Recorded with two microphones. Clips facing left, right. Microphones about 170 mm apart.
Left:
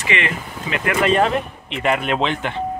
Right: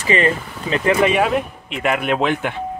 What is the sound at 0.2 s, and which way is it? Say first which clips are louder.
Speech: right 6 dB; 35° right (ahead or behind).